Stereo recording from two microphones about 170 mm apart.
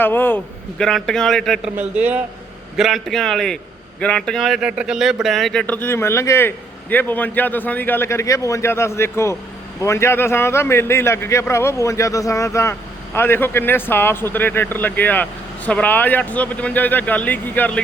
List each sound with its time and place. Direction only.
0.0 s speech: 10° left (ahead or behind)
1.7 s a man's voice: 10° right (ahead or behind); by 17.7 s 10° left (ahead or behind)